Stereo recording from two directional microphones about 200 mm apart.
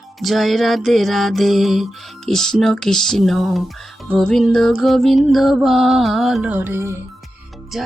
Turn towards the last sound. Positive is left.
turn(degrees=0)  # may be behind; listen again after turning